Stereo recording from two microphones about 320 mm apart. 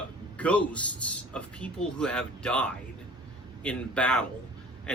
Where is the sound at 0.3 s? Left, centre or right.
Centre.